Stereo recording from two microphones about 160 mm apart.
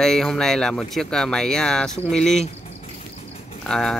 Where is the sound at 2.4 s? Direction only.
40° left (ahead or behind).